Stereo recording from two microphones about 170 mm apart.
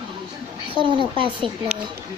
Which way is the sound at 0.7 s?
30° right (ahead or behind).